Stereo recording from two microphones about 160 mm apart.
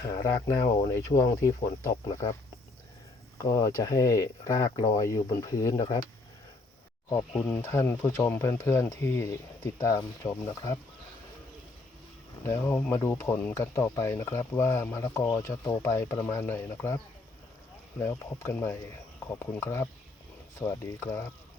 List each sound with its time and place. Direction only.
0.2 s speech: 20° left (ahead or behind)
3.4 s speech: 20° left (ahead or behind)
7.1 s speech: 15° left (ahead or behind)
12.5 s speech: 15° left (ahead or behind)
18.0 s speech: 15° left (ahead or behind)